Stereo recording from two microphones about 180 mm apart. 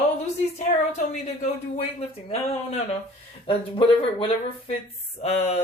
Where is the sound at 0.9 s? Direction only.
40° left (ahead or behind).